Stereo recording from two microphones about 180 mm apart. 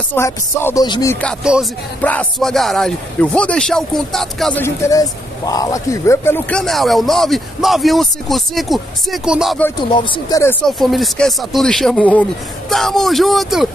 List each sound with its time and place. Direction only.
0.1 s music: 15° left (ahead or behind)
0.8 s speech: 25° left (ahead or behind)
1.4 s a man's voice: 5° right (ahead or behind)
2.0 s a man's voice: 10° left (ahead or behind)
9.8 s speech: 25° left (ahead or behind)
10.6 s a man's voice: centre (ahead or behind)